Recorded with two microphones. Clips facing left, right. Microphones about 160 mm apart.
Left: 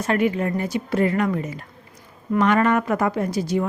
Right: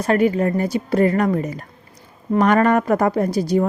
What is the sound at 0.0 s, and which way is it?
A woman's voice, 40° right (ahead or behind).